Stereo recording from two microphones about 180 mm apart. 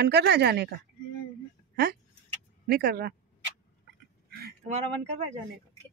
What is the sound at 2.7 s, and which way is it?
Speech, 60° right (ahead or behind).